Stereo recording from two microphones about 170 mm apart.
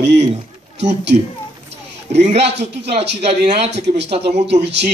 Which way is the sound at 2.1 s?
40° right (ahead or behind).